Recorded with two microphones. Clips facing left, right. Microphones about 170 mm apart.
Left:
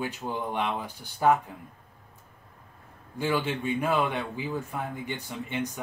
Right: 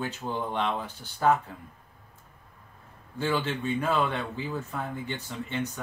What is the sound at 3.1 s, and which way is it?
Speech, 10° left (ahead or behind).